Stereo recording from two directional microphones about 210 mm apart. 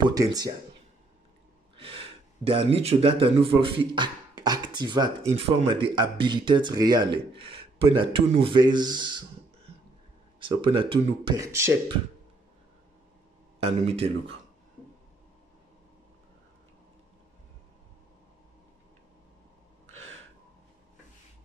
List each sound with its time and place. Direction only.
0.0 s speech: 15° right (ahead or behind)
1.8 s speech: 25° right (ahead or behind)
10.4 s speech: 25° right (ahead or behind)
13.6 s speech: 30° right (ahead or behind)